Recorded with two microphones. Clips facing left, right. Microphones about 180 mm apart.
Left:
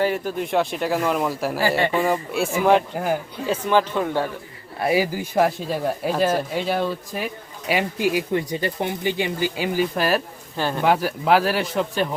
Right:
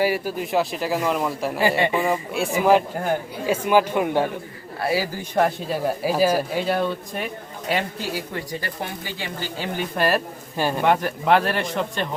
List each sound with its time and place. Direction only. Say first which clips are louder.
0.0 s speech: even; 5° right (ahead or behind)
1.6 s speech: right 1 dB; 15° right (ahead or behind)
2.0 s speech: left 1 dB; centre (ahead or behind)
3.4 s speech: right 1 dB; 10° right (ahead or behind)
4.8 s a man's voice: left 3 dB; 20° left (ahead or behind)
5.3 s speech: right 1 dB; centre (ahead or behind)
7.7 s speech: left 4 dB; 15° left (ahead or behind)
9.7 s speech: right 1 dB; centre (ahead or behind)
10.6 s speech: right 1 dB; 10° right (ahead or behind)
10.8 s speech: left 1 dB; 5° left (ahead or behind)